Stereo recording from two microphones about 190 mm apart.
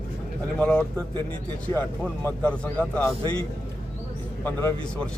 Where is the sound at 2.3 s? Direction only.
5° left (ahead or behind).